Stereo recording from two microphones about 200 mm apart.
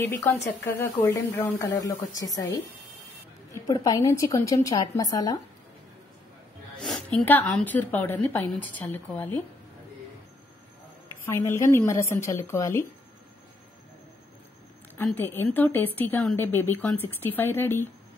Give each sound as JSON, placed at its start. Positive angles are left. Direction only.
{"t": 0.0, "sound": "a woman's voice", "side_deg": 10}
{"t": 7.2, "sound": "a woman's voice", "side_deg": 10}
{"t": 11.2, "sound": "a woman's voice", "side_deg": 15}
{"t": 15.0, "sound": "a woman's voice", "side_deg": 10}